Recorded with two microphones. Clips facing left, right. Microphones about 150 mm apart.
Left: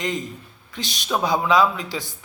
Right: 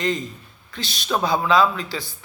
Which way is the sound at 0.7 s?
15° left (ahead or behind).